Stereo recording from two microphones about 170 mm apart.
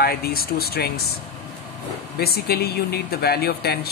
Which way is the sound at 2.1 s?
65° left (ahead or behind).